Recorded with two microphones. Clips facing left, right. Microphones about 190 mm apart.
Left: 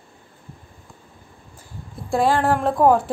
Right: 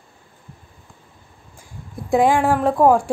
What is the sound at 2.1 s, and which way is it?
A woman's voice, 15° right (ahead or behind).